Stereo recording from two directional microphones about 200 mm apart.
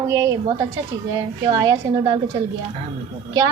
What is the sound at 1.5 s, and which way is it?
Speech, 20° right (ahead or behind).